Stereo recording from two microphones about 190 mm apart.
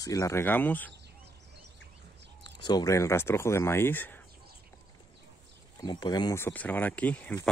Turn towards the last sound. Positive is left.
turn(degrees=10)  # may be behind; listen again after turning